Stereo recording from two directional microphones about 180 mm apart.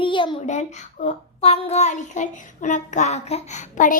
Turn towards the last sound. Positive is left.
turn(degrees=45)  # may be behind; listen again after turning